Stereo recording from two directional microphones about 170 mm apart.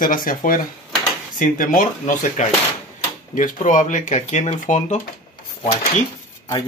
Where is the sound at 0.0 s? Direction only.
55° left (ahead or behind).